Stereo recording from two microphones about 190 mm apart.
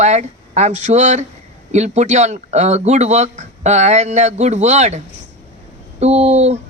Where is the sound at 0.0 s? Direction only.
35° right (ahead or behind).